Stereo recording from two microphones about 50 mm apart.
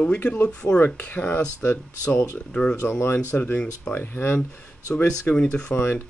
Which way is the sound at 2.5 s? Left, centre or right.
Left.